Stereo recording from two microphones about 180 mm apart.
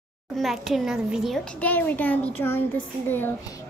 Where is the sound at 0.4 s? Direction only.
Centre (ahead or behind).